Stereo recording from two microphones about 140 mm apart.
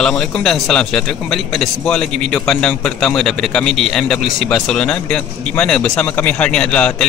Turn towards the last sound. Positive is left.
turn(degrees=10)  # may be behind; listen again after turning